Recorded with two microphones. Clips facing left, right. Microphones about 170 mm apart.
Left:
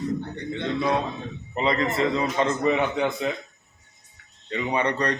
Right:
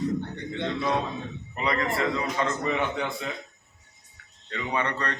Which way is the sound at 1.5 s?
25° left (ahead or behind).